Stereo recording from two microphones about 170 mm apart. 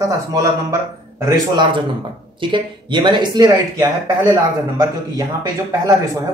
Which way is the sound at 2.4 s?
30° right (ahead or behind).